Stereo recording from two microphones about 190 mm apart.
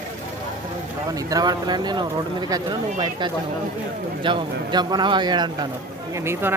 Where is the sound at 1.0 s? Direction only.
20° right (ahead or behind).